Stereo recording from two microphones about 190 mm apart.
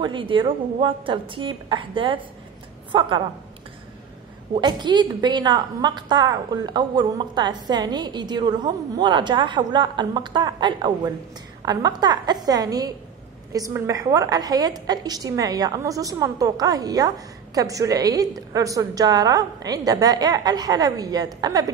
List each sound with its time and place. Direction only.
0.0 s a woman's voice: 25° right (ahead or behind)
4.6 s a woman's voice: 25° right (ahead or behind)